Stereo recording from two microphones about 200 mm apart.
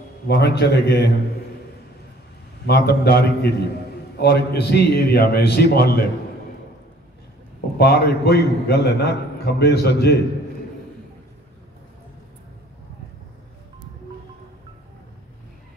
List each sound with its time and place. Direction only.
0.3 s a man's voice: 55° left (ahead or behind)
2.6 s a man's voice: 55° left (ahead or behind)
7.7 s a man's voice: 50° left (ahead or behind)